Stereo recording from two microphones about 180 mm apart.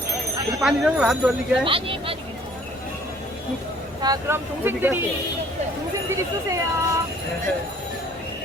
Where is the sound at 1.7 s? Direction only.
30° right (ahead or behind).